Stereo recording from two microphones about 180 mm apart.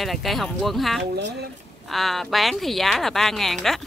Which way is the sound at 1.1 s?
65° right (ahead or behind).